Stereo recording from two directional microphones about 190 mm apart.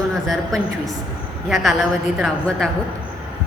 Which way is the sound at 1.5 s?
Centre (ahead or behind).